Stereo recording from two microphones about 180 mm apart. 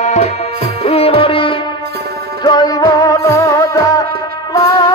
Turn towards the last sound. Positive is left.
turn(degrees=20)  # may be behind; listen again after turning